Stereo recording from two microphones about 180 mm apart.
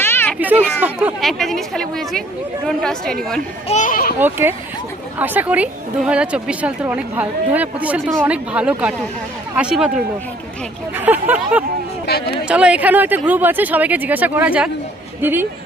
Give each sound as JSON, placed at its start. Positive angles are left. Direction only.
{"t": 0.0, "sound": "a sound", "side_deg": 10}
{"t": 0.3, "sound": "a sound", "side_deg": -10}
{"t": 0.8, "sound": "a woman's voice", "side_deg": -10}
{"t": 3.7, "sound": "a child's voice", "side_deg": 45}
{"t": 4.2, "sound": "a woman's voice", "side_deg": -10}
{"t": 10.9, "sound": "a woman's voice", "side_deg": -10}
{"t": 12.0, "sound": "speech", "side_deg": 60}
{"t": 12.5, "sound": "a woman's voice", "side_deg": -5}